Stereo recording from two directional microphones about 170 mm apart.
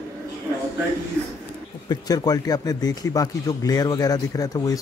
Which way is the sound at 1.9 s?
20° left (ahead or behind).